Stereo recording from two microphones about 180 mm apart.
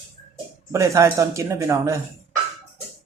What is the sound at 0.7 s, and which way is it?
Speech, 15° right (ahead or behind).